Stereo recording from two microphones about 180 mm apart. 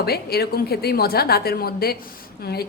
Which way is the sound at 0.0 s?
60° left (ahead or behind).